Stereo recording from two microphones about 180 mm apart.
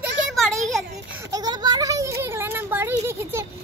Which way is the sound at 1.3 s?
25° right (ahead or behind).